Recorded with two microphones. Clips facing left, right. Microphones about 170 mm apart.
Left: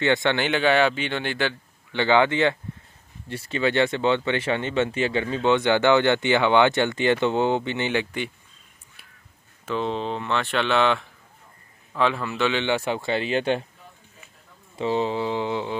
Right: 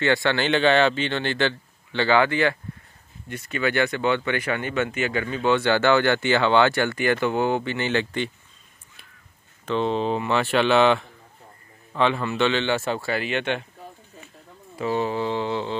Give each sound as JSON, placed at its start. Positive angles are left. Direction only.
{"t": 0.0, "sound": "speech", "side_deg": 20}
{"t": 9.7, "sound": "speech", "side_deg": 0}
{"t": 12.5, "sound": "speech", "side_deg": 15}
{"t": 14.8, "sound": "speech", "side_deg": 20}